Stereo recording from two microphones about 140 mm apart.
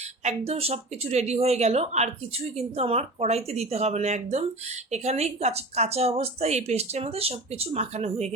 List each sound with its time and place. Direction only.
0.3 s speech: 45° right (ahead or behind)